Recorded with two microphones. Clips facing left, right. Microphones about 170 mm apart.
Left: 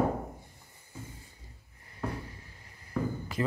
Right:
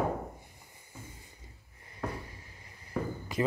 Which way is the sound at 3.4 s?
20° right (ahead or behind).